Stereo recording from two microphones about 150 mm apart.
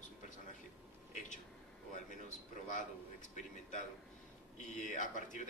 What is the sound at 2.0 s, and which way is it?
A man's voice, 55° left (ahead or behind).